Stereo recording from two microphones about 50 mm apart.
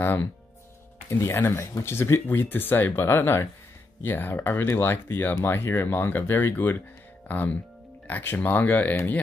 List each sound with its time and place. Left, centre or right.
1.2 s speech: left
2.2 s speech: left
4.0 s speech: left
8.1 s speech: left
8.4 s speech: left